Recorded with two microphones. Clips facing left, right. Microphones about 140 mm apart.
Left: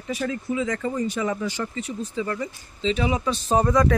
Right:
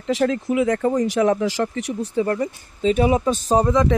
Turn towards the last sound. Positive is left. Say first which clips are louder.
# right 2 dB
turn(degrees=-20)  # may be behind; listen again after turning